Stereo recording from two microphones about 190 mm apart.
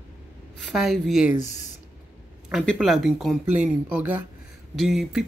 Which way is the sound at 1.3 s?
40° left (ahead or behind).